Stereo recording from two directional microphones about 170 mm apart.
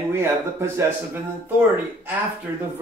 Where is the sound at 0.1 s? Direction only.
15° right (ahead or behind).